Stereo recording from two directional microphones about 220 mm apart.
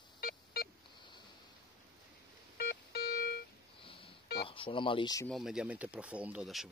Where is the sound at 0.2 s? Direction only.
45° left (ahead or behind).